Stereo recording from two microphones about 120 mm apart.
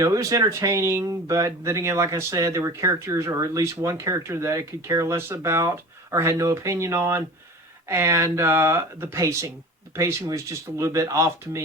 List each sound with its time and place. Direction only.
0.0 s speech: 25° right (ahead or behind)